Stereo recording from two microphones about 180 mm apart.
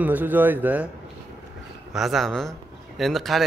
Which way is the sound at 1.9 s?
Centre (ahead or behind).